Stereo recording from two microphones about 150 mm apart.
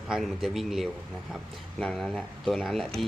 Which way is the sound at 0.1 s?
Centre (ahead or behind).